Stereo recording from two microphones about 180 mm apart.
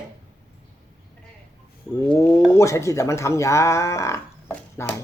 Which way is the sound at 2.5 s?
15° left (ahead or behind).